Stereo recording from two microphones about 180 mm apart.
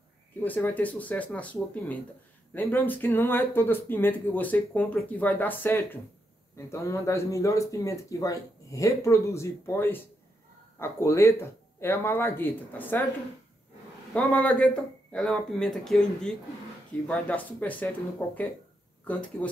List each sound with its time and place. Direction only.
0.4 s speech: 10° left (ahead or behind)
14.1 s speech: 5° left (ahead or behind)